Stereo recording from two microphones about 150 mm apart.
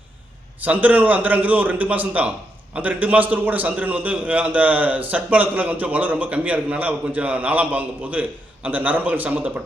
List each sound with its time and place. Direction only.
0.6 s a man's voice: 10° right (ahead or behind)